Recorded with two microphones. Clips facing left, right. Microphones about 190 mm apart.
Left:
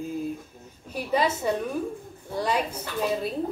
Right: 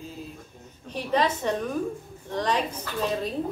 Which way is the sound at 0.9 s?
10° left (ahead or behind).